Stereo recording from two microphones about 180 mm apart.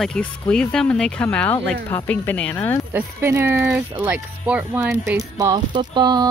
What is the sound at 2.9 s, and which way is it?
Speech, 15° right (ahead or behind).